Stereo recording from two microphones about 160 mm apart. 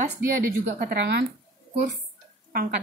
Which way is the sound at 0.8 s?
85° right.